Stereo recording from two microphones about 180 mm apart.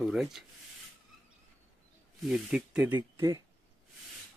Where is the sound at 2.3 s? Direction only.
5° right (ahead or behind).